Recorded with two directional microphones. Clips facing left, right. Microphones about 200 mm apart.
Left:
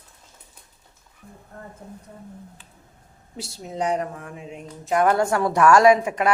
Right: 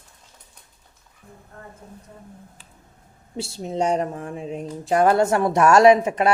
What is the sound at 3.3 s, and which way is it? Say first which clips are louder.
Speech: right 5 dB; 25° right (ahead or behind).